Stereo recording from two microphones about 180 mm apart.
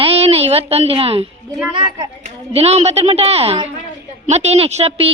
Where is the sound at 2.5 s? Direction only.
35° right (ahead or behind).